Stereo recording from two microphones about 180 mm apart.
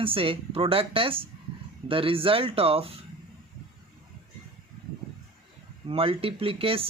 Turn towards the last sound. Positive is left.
turn(degrees=-30)  # may be behind; listen again after turning